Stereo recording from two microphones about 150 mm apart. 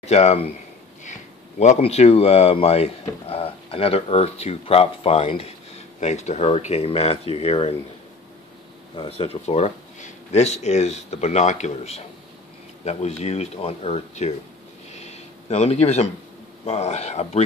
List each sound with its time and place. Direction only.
0.0 s speech: 45° left (ahead or behind)
1.6 s speech: 45° left (ahead or behind)
8.9 s speech: 35° left (ahead or behind)
14.9 s a sound: 45° left (ahead or behind)
16.6 s speech: 45° left (ahead or behind)